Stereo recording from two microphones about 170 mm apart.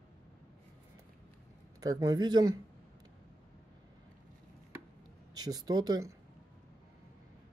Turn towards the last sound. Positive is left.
turn(degrees=-25)  # may be behind; listen again after turning